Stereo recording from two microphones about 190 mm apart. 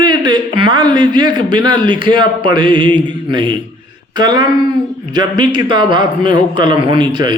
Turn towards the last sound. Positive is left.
turn(degrees=-25)  # may be behind; listen again after turning